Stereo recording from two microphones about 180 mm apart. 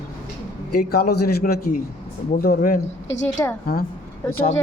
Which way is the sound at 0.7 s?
60° left (ahead or behind).